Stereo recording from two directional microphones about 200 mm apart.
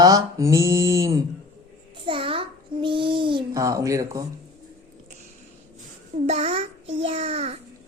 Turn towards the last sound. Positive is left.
turn(degrees=-30)  # may be behind; listen again after turning